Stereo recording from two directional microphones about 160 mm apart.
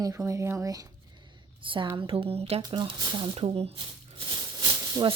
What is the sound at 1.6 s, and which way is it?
A woman's voice, 30° right (ahead or behind).